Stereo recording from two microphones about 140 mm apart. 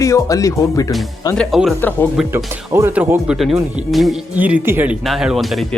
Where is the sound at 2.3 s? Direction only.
20° right (ahead or behind); by 4.2 s centre (ahead or behind).